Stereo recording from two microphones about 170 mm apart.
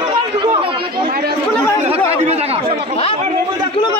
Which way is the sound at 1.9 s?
35° right (ahead or behind).